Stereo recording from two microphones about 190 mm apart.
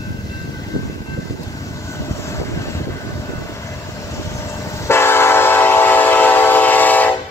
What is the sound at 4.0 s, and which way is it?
Train, 15° left (ahead or behind).